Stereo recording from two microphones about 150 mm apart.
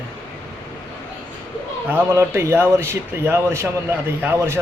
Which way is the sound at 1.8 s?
15° right (ahead or behind).